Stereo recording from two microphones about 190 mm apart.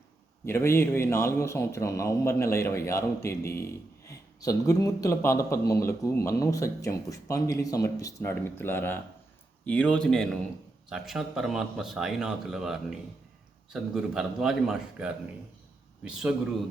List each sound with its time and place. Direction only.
0.4 s a man's voice: 15° left (ahead or behind); by 16.3 s 5° right (ahead or behind)